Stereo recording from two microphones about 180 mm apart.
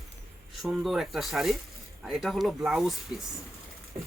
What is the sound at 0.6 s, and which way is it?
Speech, centre (ahead or behind).